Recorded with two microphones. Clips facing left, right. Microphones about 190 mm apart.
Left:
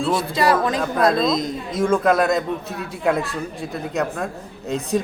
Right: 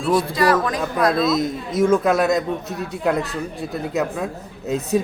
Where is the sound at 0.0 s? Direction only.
25° left (ahead or behind).